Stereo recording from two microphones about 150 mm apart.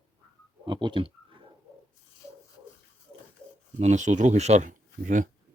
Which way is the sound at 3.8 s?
50° right (ahead or behind).